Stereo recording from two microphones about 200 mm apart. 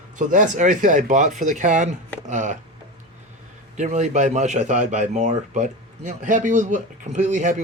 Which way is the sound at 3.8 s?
35° right (ahead or behind).